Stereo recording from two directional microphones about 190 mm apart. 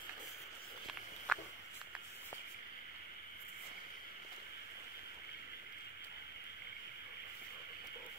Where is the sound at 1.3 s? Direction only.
5° left (ahead or behind).